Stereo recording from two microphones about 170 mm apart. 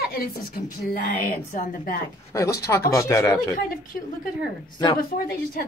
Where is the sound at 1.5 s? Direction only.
50° left (ahead or behind).